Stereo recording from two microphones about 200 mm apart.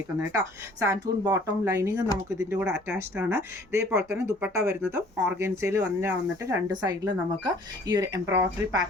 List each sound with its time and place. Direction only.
0.3 s speech: 15° right (ahead or behind)